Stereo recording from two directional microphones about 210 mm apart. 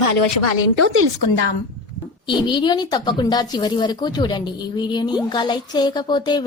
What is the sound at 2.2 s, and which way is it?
A woman's voice, 20° left (ahead or behind).